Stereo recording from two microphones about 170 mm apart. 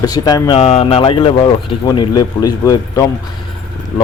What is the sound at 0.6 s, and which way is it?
Speech, 40° left (ahead or behind).